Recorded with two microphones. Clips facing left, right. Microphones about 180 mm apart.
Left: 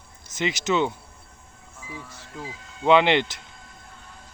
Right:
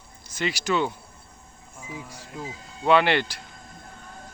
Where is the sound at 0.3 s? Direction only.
20° left (ahead or behind).